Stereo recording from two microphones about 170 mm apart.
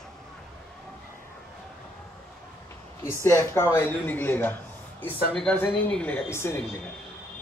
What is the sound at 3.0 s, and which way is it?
Speech, 15° left (ahead or behind).